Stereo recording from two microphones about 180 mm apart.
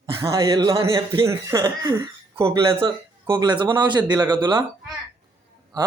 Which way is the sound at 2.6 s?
30° right (ahead or behind).